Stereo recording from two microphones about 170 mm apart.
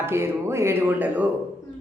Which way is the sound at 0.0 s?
15° right (ahead or behind).